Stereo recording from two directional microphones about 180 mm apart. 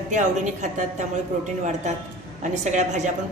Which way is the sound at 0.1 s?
45° right (ahead or behind).